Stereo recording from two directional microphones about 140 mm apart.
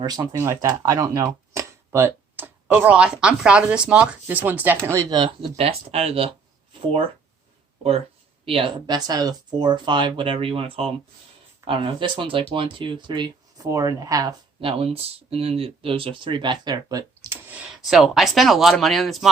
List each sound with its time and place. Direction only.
0.2 s speech: 20° right (ahead or behind)
5.1 s speech: 35° right (ahead or behind)
5.5 s speech: 45° right (ahead or behind)
8.4 s speech: 40° right (ahead or behind)
14.6 s speech: 40° right (ahead or behind)
17.5 s speech: 5° right (ahead or behind)